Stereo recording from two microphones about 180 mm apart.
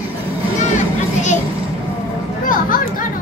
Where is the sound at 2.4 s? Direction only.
50° left (ahead or behind).